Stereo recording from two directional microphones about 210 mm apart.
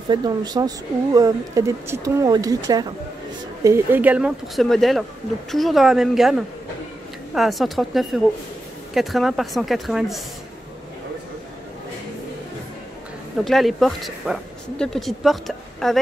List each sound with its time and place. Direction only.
0.1 s speech: 20° right (ahead or behind); by 10.2 s centre (ahead or behind)
13.4 s speech: centre (ahead or behind)